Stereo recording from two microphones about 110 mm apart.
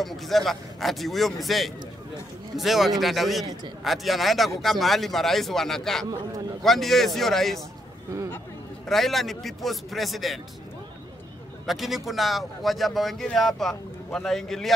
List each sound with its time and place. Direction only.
0.0 s speech: centre (ahead or behind)
8.8 s speech: centre (ahead or behind)
11.6 s speech: centre (ahead or behind)